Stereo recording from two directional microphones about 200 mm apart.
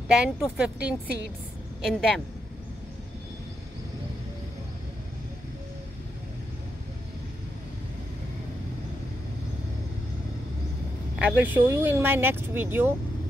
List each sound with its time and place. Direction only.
0.1 s speech: 5° right (ahead or behind)
11.1 s speech: 5° right (ahead or behind)